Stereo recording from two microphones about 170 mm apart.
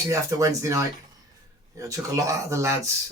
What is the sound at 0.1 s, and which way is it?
Speech, 20° right (ahead or behind).